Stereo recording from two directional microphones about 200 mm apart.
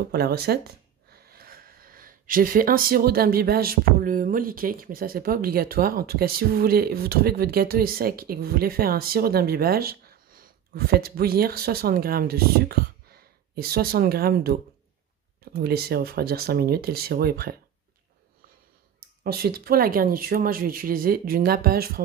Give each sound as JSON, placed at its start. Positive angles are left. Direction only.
{"t": 0.1, "sound": "speech", "side_deg": -50}
{"t": 19.2, "sound": "speech", "side_deg": -50}